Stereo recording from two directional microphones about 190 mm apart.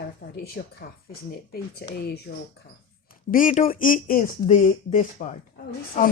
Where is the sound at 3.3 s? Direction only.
45° left (ahead or behind).